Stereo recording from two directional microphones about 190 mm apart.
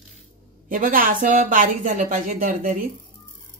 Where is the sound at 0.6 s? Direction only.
45° right (ahead or behind).